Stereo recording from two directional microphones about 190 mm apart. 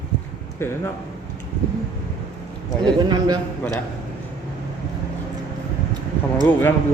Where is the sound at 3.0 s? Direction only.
20° right (ahead or behind).